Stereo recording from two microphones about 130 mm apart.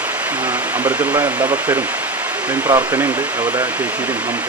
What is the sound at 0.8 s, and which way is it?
Speech, 30° right (ahead or behind).